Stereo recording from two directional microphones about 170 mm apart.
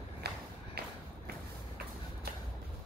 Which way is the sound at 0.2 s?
70° right (ahead or behind).